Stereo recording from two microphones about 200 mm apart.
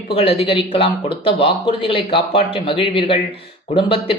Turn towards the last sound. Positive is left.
turn(degrees=25)  # may be behind; listen again after turning